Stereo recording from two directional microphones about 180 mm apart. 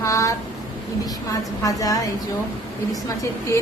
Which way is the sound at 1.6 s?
20° left (ahead or behind).